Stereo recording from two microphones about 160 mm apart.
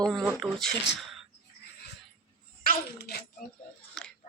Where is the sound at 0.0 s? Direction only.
Centre (ahead or behind).